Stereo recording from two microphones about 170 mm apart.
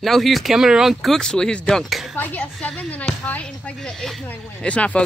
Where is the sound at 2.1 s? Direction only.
10° left (ahead or behind).